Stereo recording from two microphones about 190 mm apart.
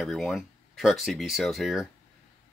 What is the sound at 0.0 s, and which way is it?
Speech, centre (ahead or behind).